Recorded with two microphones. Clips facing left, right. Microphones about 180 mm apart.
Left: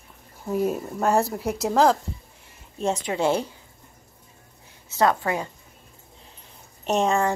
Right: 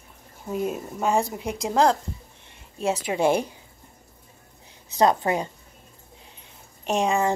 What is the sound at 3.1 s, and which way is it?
Speech, 15° right (ahead or behind).